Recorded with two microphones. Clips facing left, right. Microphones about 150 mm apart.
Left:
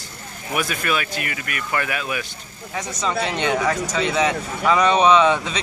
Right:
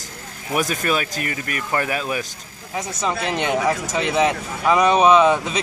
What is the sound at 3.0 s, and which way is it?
Speech, 10° right (ahead or behind).